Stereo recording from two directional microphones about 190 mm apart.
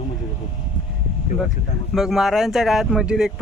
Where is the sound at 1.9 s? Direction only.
Centre (ahead or behind).